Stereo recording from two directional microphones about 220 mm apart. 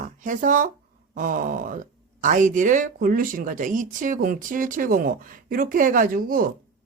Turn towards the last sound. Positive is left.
turn(degrees=-40)  # may be behind; listen again after turning